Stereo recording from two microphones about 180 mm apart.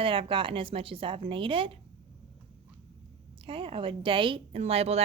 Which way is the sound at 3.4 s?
30° right (ahead or behind).